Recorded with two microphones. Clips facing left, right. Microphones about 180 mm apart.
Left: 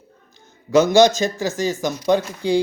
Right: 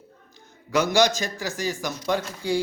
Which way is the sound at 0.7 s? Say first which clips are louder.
Left 7 dB; 20° left (ahead or behind).